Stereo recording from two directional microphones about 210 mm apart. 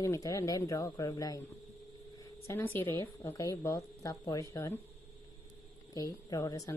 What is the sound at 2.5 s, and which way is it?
A woman's voice, 10° left (ahead or behind).